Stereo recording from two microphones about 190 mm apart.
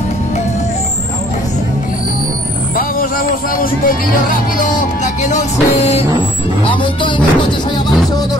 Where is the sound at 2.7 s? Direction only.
50° left (ahead or behind).